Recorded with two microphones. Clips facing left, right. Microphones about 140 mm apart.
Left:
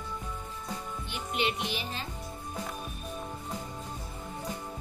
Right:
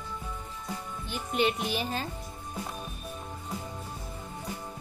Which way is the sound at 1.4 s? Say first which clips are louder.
Right 4 dB; 45° right (ahead or behind).